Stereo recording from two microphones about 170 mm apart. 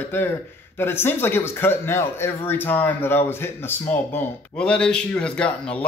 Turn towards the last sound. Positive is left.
turn(degrees=5)  # may be behind; listen again after turning